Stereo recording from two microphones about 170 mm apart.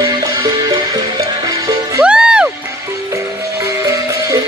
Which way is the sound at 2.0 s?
5° right (ahead or behind).